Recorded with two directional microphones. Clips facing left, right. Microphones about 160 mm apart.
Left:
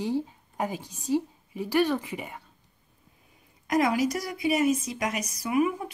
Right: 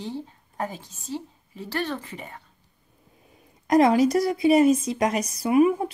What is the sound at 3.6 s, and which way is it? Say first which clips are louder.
A woman's voice: right 6 dB; 35° right (ahead or behind).